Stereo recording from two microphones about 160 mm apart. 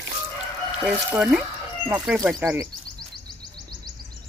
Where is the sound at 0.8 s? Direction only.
5° right (ahead or behind).